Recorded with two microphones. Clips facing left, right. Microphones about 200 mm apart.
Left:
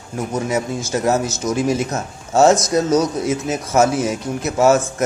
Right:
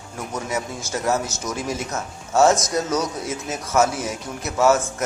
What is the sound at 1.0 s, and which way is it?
Speech, 20° left (ahead or behind).